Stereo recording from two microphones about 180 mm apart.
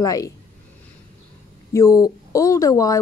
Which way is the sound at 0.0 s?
20° left (ahead or behind).